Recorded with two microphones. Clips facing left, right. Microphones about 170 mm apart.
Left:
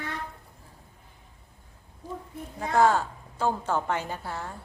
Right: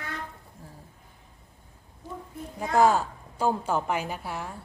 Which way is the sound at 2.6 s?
15° right (ahead or behind).